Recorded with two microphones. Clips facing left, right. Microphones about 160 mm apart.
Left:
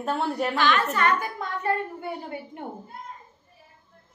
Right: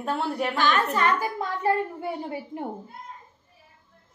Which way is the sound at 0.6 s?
40° right (ahead or behind).